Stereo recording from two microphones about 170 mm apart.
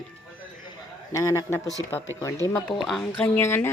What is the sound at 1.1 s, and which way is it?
Speech, 20° left (ahead or behind).